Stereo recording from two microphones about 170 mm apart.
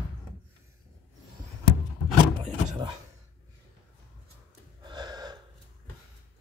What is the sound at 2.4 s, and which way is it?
Speech, 25° right (ahead or behind).